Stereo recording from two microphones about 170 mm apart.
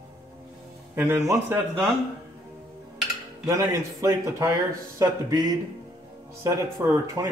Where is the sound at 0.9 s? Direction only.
15° right (ahead or behind).